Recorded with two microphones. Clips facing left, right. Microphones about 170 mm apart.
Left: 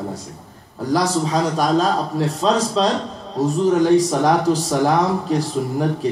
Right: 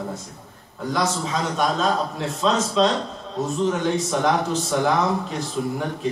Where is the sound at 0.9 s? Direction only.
35° left (ahead or behind).